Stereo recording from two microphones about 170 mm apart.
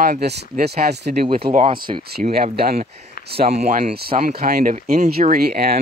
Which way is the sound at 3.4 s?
45° right (ahead or behind).